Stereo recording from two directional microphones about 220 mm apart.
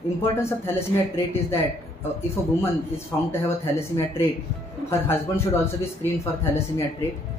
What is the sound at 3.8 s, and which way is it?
Speech, 10° left (ahead or behind).